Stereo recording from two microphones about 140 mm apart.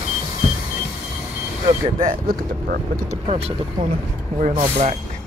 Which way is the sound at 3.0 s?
50° right (ahead or behind).